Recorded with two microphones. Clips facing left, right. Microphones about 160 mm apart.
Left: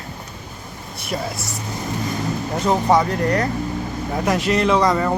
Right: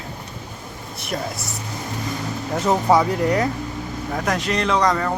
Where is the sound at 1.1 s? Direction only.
5° left (ahead or behind).